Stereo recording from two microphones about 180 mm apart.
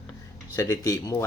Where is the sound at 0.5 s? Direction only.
20° left (ahead or behind).